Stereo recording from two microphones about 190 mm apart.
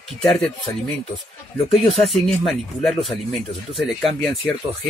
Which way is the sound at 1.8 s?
Centre (ahead or behind).